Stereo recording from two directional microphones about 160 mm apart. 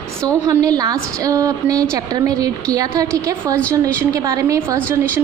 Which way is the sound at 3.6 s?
10° left (ahead or behind).